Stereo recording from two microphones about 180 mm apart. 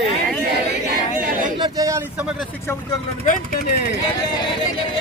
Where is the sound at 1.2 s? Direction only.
45° right (ahead or behind).